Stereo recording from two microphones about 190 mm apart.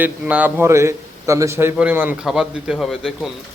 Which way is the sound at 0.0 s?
10° right (ahead or behind).